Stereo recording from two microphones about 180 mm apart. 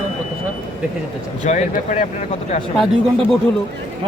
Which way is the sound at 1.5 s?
45° left (ahead or behind).